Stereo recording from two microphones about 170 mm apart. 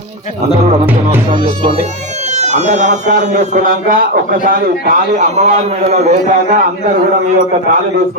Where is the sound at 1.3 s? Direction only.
30° right (ahead or behind).